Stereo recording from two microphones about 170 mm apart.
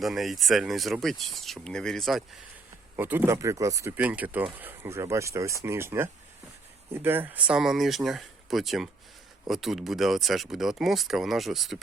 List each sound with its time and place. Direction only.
0.0 s speech: centre (ahead or behind)
2.9 s speech: 10° right (ahead or behind)